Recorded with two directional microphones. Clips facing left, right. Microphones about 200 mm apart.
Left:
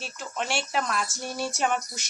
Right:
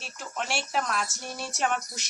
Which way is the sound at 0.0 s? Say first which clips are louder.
Left 3 dB; centre (ahead or behind).